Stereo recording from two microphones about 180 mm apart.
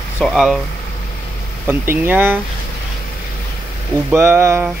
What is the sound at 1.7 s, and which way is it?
Speech, 10° right (ahead or behind).